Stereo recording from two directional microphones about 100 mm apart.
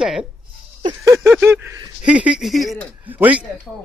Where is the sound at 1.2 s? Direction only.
20° right (ahead or behind).